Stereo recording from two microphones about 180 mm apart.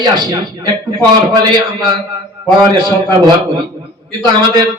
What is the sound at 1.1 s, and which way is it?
A man's voice, 25° right (ahead or behind).